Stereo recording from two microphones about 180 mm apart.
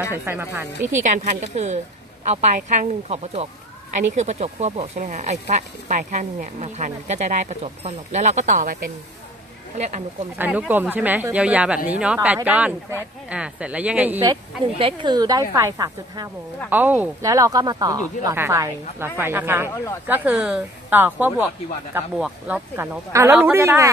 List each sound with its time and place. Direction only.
0.1 s a woman's voice: 10° right (ahead or behind)
1.0 s speech: 45° right (ahead or behind)
10.3 s a woman's voice: 10° right (ahead or behind)
14.2 s speech: 30° right (ahead or behind)
16.7 s a woman's voice: 10° right (ahead or behind)
17.3 s a woman's voice: 20° right (ahead or behind)
19.7 s speech: 15° left (ahead or behind)
20.1 s a woman's voice: 5° right (ahead or behind)